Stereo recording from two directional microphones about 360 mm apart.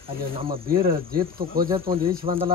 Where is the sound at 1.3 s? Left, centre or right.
Right.